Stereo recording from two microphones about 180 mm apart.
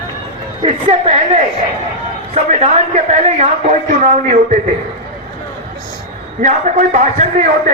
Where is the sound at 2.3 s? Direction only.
35° right (ahead or behind).